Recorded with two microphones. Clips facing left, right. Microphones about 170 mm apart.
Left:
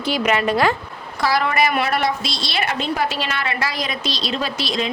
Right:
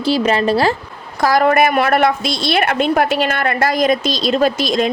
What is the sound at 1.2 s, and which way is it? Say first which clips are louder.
A woman's voice: right 6 dB; 50° right (ahead or behind).